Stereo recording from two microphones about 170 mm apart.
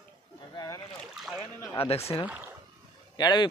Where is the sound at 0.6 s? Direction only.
25° left (ahead or behind).